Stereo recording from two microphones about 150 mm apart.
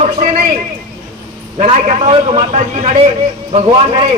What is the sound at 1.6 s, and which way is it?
A man's voice, 45° right (ahead or behind).